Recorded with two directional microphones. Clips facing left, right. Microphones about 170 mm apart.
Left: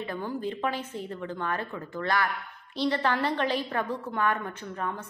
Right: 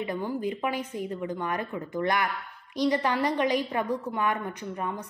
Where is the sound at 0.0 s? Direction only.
15° right (ahead or behind).